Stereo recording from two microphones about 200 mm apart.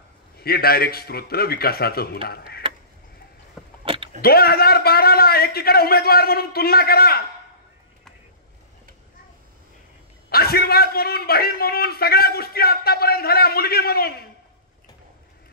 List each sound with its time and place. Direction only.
0.4 s a man's voice: 50° left (ahead or behind)
3.8 s vehicle: 25° right (ahead or behind)
4.2 s a man's voice: 50° left (ahead or behind)
10.3 s a man's voice: 50° left (ahead or behind)